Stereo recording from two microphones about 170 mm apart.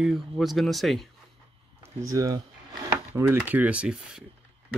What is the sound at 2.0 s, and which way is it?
Speech, 20° right (ahead or behind).